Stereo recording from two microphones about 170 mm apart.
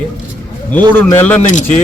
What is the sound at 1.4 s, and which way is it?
Speech, 45° left (ahead or behind).